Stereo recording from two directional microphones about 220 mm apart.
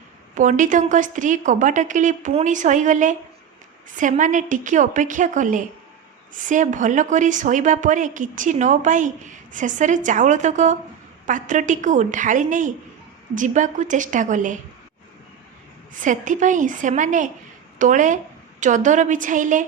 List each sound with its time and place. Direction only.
0.3 s a woman's voice: 35° right (ahead or behind)
15.9 s a woman's voice: 35° right (ahead or behind)